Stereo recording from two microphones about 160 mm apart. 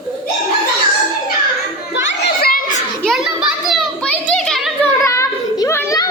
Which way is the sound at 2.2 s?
70° left (ahead or behind).